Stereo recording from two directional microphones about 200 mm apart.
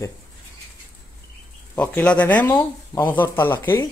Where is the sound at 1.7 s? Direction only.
5° left (ahead or behind).